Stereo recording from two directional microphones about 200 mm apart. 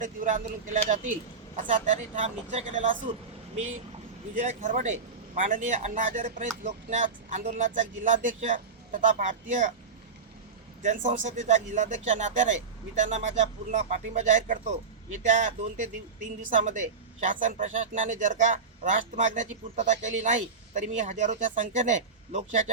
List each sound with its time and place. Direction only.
0.0 s speech: 40° right (ahead or behind)
10.8 s speech: 35° right (ahead or behind)